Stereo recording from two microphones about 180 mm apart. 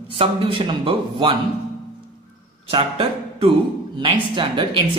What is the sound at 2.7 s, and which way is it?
Speech, 30° right (ahead or behind).